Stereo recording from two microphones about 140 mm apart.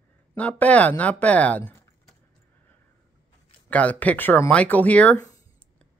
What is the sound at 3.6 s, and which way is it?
Speech, 10° left (ahead or behind).